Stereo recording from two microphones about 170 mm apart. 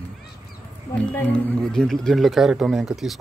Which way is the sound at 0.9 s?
10° left (ahead or behind).